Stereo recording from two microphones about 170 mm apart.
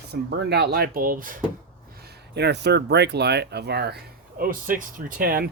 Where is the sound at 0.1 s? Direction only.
75° right (ahead or behind); by 1.4 s 55° right (ahead or behind).